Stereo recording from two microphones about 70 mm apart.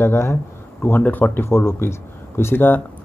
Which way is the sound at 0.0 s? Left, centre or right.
Left.